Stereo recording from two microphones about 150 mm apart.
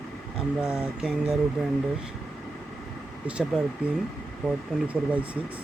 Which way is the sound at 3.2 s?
10° right (ahead or behind).